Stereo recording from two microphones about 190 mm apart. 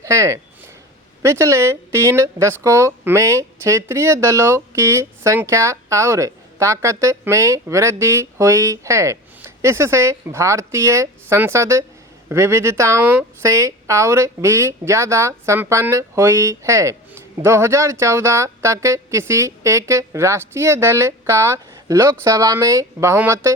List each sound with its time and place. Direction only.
0.0 s speech: 15° right (ahead or behind)